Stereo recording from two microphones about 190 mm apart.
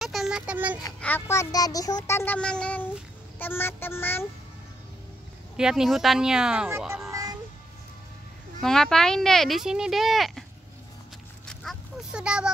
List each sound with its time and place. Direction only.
0.0 s a sound: centre (ahead or behind)
1.0 s speech: 10° left (ahead or behind)
5.6 s speech: 5° right (ahead or behind)
7.1 s music: 20° right (ahead or behind)
8.6 s speech: centre (ahead or behind)
11.4 s a sound: centre (ahead or behind)